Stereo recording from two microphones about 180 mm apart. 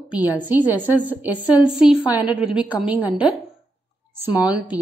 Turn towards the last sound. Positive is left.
turn(degrees=-10)  # may be behind; listen again after turning